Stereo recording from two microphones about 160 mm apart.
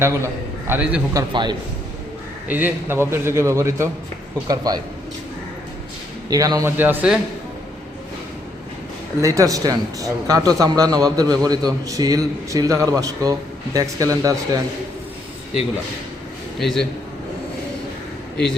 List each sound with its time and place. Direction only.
0.0 s a man's voice: 15° right (ahead or behind)
1.1 s a man's voice: 30° right (ahead or behind)
2.5 s a man's voice: 10° right (ahead or behind)
6.3 s a man's voice: 20° right (ahead or behind)
9.2 s a man's voice: 20° right (ahead or behind)
16.6 s a man's voice: centre (ahead or behind)